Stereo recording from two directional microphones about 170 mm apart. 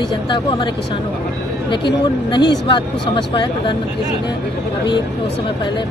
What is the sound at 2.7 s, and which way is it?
Speech, 25° left (ahead or behind).